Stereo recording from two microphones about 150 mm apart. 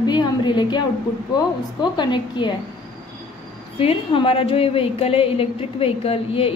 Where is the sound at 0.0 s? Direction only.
30° left (ahead or behind).